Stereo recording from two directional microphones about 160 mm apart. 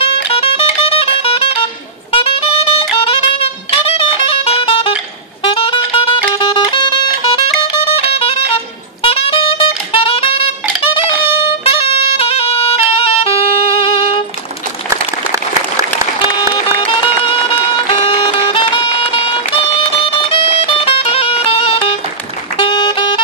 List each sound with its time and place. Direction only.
0.0 s music: 35° left (ahead or behind)
16.8 s music: 30° left (ahead or behind)